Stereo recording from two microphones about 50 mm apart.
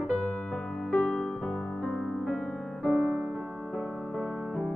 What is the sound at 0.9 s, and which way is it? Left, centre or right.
Music, left.